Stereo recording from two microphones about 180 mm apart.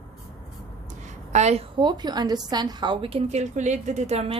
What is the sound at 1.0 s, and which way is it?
A woman's voice, 40° right (ahead or behind).